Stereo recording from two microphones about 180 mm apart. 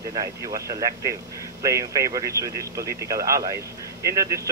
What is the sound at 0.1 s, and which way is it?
Speech, 20° right (ahead or behind).